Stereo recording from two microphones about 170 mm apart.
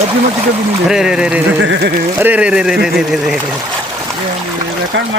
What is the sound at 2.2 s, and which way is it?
Speech, 10° right (ahead or behind).